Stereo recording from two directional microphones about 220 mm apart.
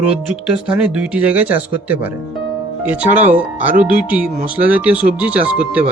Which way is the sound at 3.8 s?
5° right (ahead or behind).